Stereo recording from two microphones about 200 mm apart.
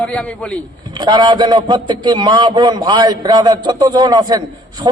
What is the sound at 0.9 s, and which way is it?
A man's voice, 20° right (ahead or behind).